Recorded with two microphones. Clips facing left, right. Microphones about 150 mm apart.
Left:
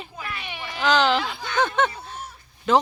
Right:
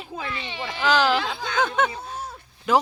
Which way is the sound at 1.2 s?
90° right.